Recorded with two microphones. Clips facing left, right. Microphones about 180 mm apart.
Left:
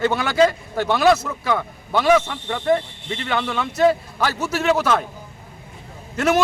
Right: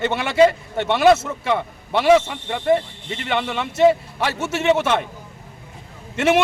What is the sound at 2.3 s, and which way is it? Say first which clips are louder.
A man's voice: right 1 dB; 5° right (ahead or behind).